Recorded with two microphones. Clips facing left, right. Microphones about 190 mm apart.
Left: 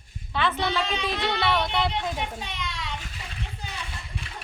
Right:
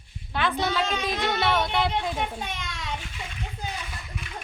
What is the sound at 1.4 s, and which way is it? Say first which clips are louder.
Speech: right 1 dB; 5° right (ahead or behind).